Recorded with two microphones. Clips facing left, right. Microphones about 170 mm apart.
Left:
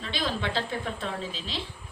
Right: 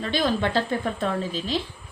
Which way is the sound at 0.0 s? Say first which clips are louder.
Right 7 dB; 50° right (ahead or behind).